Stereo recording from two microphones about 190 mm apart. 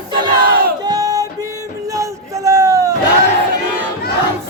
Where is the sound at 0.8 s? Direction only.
20° right (ahead or behind).